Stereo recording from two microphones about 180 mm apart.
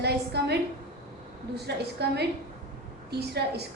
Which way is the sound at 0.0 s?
65° right (ahead or behind).